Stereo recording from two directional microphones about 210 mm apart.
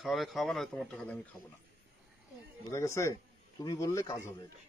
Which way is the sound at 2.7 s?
15° left (ahead or behind).